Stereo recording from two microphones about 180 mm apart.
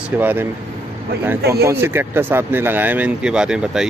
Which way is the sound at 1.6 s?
10° right (ahead or behind).